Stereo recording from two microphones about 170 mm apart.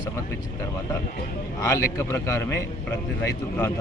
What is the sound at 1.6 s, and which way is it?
A man's voice, 15° left (ahead or behind).